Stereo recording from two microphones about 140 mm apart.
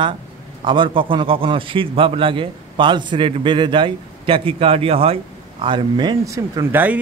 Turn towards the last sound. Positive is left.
turn(degrees=-15)  # may be behind; listen again after turning